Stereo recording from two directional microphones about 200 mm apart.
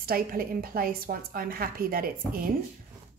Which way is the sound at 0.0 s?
45° right (ahead or behind).